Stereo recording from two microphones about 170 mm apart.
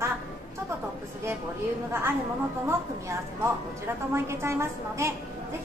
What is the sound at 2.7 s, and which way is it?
A woman's voice, 15° right (ahead or behind).